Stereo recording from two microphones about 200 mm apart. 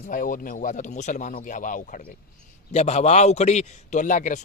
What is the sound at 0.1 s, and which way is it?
A man's voice, 45° left (ahead or behind).